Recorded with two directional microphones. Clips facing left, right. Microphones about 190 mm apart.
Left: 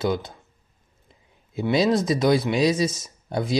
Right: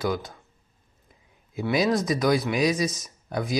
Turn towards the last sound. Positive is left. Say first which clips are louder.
# left 3 dB
turn(degrees=30)  # may be behind; listen again after turning